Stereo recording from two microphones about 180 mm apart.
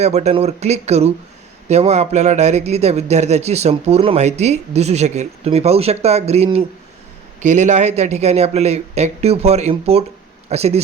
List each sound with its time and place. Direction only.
0.0 s speech: 40° right (ahead or behind)